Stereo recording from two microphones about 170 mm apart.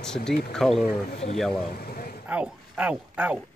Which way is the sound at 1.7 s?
60° left (ahead or behind).